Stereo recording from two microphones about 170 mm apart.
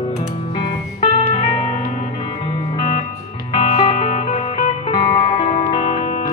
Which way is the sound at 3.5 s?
30° left (ahead or behind).